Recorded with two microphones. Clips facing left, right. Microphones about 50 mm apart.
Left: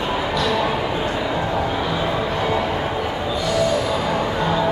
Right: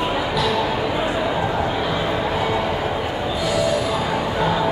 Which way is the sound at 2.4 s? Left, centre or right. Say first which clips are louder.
Even; centre.